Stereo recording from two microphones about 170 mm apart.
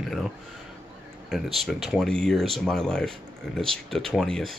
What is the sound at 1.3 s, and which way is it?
Speech, centre (ahead or behind).